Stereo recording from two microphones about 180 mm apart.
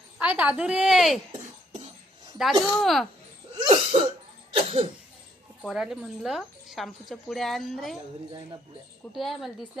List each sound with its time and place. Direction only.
0.2 s speech: 5° right (ahead or behind)
2.4 s speech: centre (ahead or behind)
3.6 s cough: 35° right (ahead or behind)
5.6 s speech: 5° right (ahead or behind)
9.1 s speech: centre (ahead or behind)